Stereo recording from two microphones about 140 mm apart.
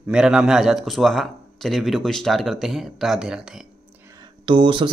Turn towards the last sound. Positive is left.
turn(degrees=-35)  # may be behind; listen again after turning